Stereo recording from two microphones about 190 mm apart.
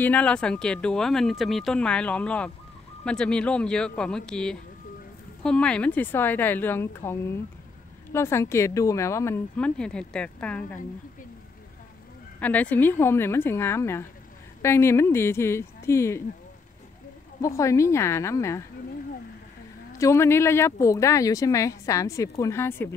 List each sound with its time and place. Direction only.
0.0 s speech: 5° left (ahead or behind)
12.4 s speech: 10° left (ahead or behind)
17.4 s speech: 15° left (ahead or behind)
20.0 s speech: 15° left (ahead or behind)